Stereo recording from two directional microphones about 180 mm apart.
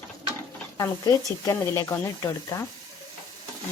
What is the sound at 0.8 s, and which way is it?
Speech, 20° left (ahead or behind).